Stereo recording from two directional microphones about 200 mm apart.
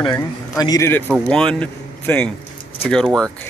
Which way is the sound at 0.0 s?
20° left (ahead or behind).